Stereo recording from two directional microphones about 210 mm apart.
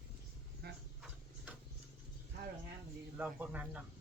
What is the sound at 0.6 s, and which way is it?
Speech, 50° right (ahead or behind).